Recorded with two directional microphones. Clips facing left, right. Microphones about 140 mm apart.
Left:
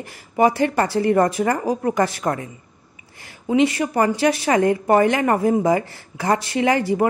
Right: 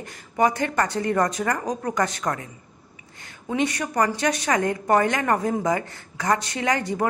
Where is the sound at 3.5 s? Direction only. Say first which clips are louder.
Left 6 dB; 25° left (ahead or behind).